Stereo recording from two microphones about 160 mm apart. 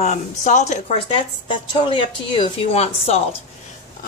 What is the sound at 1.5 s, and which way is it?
Speech, 30° left (ahead or behind).